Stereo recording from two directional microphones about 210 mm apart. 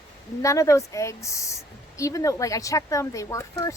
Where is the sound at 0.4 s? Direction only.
15° left (ahead or behind).